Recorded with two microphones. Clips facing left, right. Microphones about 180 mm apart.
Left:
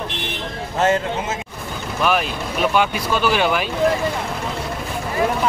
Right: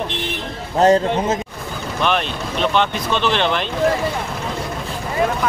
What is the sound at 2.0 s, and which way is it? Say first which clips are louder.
Speech: even; 5° left (ahead or behind).